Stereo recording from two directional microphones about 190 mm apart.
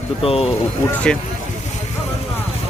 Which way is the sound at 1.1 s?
5° left (ahead or behind).